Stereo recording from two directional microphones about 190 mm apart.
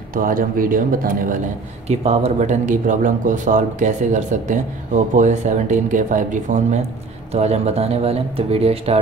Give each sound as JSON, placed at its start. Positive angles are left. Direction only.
{"t": 0.1, "sound": "speech", "side_deg": -45}
{"t": 1.9, "sound": "speech", "side_deg": -35}